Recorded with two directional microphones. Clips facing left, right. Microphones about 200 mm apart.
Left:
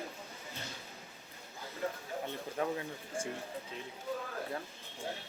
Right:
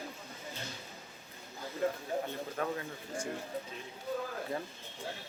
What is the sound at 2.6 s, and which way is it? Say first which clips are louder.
Speech: left 1 dB; 20° left (ahead or behind).